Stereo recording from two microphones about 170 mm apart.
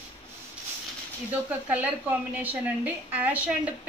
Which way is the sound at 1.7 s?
10° right (ahead or behind).